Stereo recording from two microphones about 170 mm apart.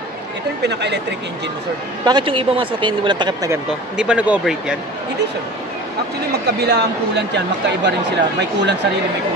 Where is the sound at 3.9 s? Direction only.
5° right (ahead or behind).